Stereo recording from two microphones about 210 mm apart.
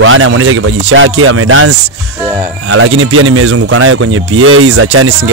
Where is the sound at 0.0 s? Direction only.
75° right (ahead or behind).